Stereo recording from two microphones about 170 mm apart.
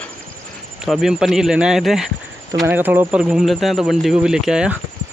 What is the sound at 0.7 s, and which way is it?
Speech, centre (ahead or behind).